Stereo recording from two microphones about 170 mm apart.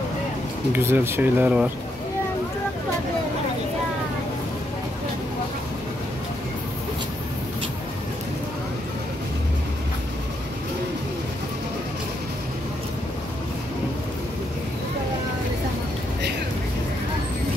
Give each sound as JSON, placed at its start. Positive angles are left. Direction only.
{"t": 0.7, "sound": "speech", "side_deg": -15}